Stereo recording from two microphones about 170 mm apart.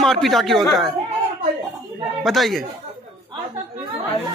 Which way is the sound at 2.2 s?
Centre (ahead or behind).